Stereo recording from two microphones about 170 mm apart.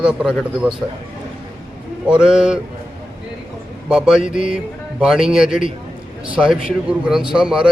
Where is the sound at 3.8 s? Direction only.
5° right (ahead or behind).